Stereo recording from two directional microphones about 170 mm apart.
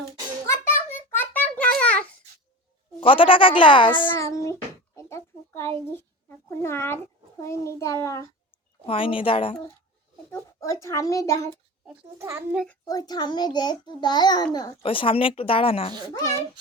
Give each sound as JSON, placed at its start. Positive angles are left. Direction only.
{"t": 0.4, "sound": "a sound", "side_deg": 15}
{"t": 3.0, "sound": "speech", "side_deg": 30}
{"t": 4.1, "sound": "child singing", "side_deg": 20}
{"t": 4.9, "sound": "a sound", "side_deg": 15}
{"t": 6.0, "sound": "a child's voice", "side_deg": 15}
{"t": 8.9, "sound": "speech", "side_deg": 30}
{"t": 10.3, "sound": "a child's voice", "side_deg": 15}
{"t": 12.2, "sound": "a child's voice", "side_deg": -15}
{"t": 12.8, "sound": "a child's voice", "side_deg": 20}